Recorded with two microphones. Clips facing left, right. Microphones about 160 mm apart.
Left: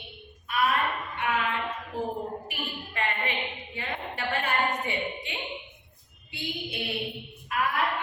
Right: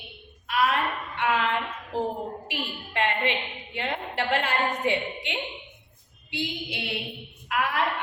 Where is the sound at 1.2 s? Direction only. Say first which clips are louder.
Right 4 dB; 90° right.